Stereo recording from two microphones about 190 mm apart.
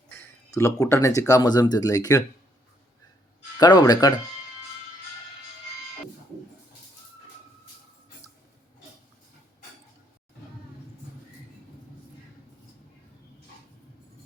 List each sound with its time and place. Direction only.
0.1 s a sound: 10° left (ahead or behind)
1.3 s speech: 20° left (ahead or behind)
3.6 s speech: 20° left (ahead or behind)